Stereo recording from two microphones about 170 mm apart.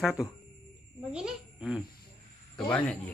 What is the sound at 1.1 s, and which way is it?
Insect, 5° right (ahead or behind).